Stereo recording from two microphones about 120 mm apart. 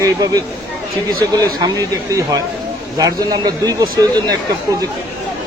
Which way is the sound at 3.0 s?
30° right (ahead or behind).